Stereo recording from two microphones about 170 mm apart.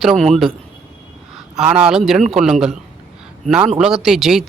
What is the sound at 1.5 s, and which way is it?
Speech, 5° right (ahead or behind).